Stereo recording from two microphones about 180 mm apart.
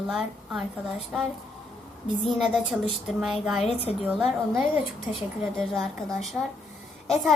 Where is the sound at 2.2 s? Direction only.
Centre (ahead or behind).